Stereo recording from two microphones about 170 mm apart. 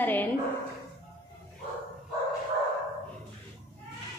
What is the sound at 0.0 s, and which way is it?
Speech, 10° left (ahead or behind).